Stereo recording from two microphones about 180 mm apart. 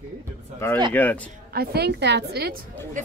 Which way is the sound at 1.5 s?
60° right (ahead or behind).